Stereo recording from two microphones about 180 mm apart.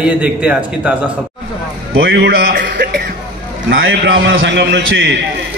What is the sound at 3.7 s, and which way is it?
A man's voice, 90° right.